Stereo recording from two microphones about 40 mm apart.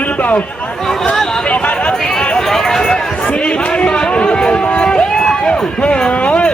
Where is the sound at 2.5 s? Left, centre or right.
Centre.